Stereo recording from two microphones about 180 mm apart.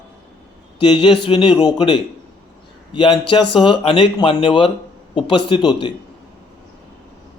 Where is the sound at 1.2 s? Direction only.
30° left (ahead or behind).